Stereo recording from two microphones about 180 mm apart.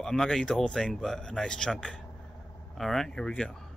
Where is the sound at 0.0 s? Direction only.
Centre (ahead or behind).